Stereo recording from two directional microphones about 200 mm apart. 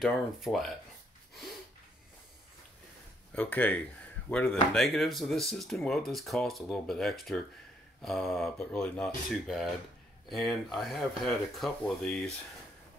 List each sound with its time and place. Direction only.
0.0 s speech: centre (ahead or behind)
3.3 s speech: 10° left (ahead or behind)